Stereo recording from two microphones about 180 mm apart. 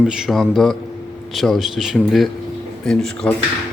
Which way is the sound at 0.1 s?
Centre (ahead or behind).